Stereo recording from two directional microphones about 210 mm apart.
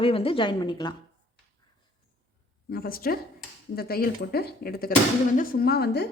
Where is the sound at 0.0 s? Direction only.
25° left (ahead or behind).